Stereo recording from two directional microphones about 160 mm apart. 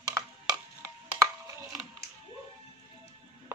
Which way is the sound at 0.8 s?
15° right (ahead or behind).